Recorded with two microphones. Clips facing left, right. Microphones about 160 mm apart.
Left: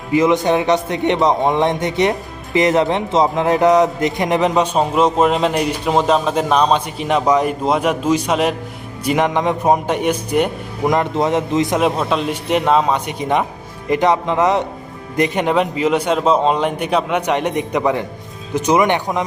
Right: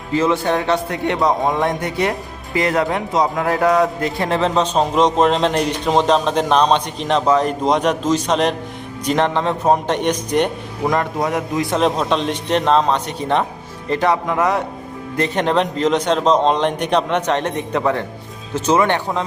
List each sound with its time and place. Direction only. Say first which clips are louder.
0.1 s a man's voice: left 3 dB; 15° left (ahead or behind)
10.8 s a man's voice: left 3 dB; 20° left (ahead or behind)
11.8 s a man's voice: even; 5° left (ahead or behind)